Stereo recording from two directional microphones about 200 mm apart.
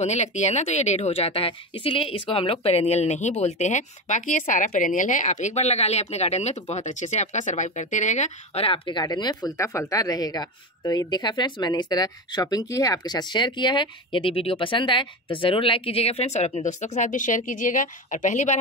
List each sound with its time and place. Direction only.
0.0 s a woman's voice: 35° left (ahead or behind)